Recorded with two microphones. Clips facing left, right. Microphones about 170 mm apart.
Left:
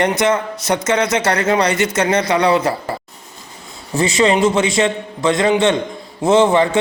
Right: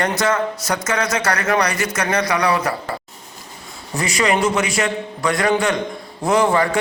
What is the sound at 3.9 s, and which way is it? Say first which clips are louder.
A man's voice: left 5 dB; 25° left (ahead or behind).